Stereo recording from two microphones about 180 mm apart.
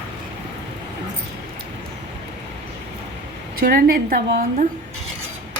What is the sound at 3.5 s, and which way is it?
A woman's voice, 55° right (ahead or behind).